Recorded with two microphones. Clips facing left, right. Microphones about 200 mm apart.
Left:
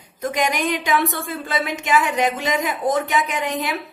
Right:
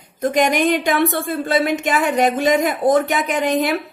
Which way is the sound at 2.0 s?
50° right (ahead or behind).